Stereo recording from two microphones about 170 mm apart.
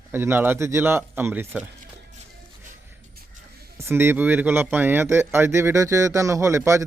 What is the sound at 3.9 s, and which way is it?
Speech, 15° right (ahead or behind).